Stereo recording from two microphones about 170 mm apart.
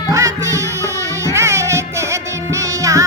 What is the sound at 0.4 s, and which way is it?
Music, 20° right (ahead or behind).